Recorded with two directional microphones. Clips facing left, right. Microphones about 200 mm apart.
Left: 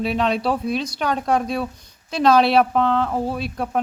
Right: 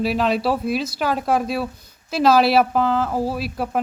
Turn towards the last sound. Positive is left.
turn(degrees=-5)  # may be behind; listen again after turning